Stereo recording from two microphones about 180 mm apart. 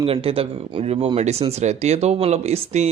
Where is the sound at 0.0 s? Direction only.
30° right (ahead or behind).